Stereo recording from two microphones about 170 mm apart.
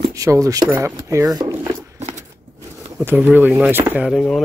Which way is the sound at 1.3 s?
20° right (ahead or behind).